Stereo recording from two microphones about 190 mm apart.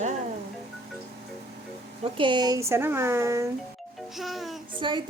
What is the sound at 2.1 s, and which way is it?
Speech, 25° right (ahead or behind).